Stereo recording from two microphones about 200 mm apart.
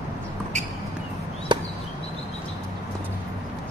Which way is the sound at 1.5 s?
20° right (ahead or behind).